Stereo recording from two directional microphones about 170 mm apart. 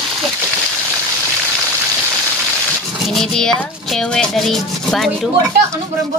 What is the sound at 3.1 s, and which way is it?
Speech, centre (ahead or behind).